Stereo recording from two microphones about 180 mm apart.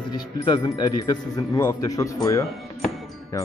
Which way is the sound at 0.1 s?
25° left (ahead or behind).